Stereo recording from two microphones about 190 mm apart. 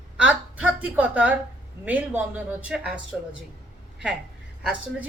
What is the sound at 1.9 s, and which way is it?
A woman's voice, 10° right (ahead or behind).